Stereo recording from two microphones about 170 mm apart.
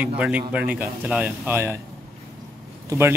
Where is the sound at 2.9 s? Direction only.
15° right (ahead or behind).